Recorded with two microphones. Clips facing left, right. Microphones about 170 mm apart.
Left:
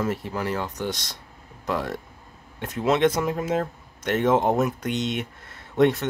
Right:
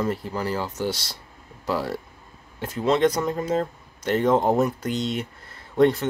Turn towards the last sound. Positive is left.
turn(degrees=0)  # may be behind; listen again after turning